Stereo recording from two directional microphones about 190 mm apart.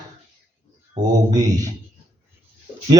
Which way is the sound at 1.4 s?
20° right (ahead or behind).